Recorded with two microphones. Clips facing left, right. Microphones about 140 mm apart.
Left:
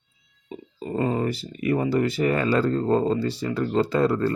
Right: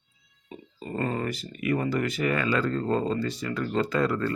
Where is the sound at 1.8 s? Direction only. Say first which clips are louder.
Left 5 dB; 30° left (ahead or behind).